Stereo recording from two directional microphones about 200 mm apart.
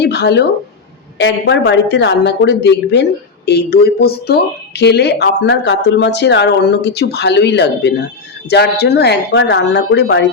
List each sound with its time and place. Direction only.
0.0 s a woman's voice: 55° left (ahead or behind)